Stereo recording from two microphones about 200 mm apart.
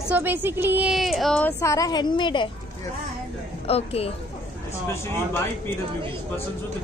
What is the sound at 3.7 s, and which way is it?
Speech, 30° left (ahead or behind).